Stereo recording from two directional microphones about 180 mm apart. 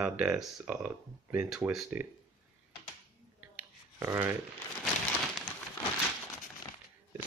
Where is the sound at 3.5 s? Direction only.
15° right (ahead or behind).